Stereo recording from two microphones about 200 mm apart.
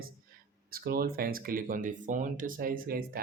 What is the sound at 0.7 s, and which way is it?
Speech, 45° right (ahead or behind).